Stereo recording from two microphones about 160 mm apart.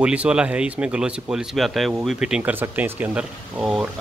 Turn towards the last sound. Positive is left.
turn(degrees=-5)  # may be behind; listen again after turning